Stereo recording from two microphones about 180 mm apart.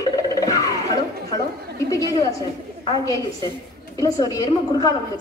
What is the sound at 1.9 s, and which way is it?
Speech, 20° left (ahead or behind).